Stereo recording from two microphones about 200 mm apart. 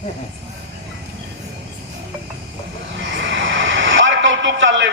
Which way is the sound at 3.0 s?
70° right (ahead or behind).